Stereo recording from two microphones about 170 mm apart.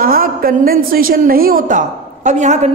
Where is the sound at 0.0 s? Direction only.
60° right (ahead or behind).